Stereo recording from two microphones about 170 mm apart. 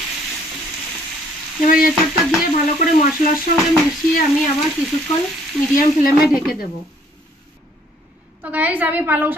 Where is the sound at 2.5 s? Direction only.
55° left (ahead or behind).